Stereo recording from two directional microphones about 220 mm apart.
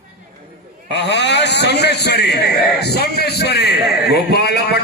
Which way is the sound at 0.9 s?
50° left (ahead or behind).